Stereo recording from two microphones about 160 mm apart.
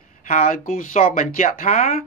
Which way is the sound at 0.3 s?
60° left (ahead or behind).